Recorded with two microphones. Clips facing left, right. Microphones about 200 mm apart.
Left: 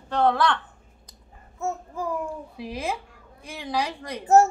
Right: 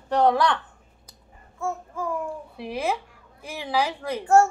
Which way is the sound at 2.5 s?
Centre (ahead or behind).